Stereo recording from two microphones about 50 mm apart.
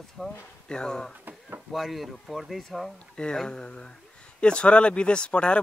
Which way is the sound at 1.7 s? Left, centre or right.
Centre.